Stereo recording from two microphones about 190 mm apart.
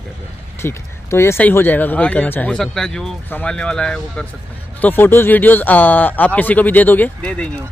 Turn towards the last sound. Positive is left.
turn(degrees=5)  # may be behind; listen again after turning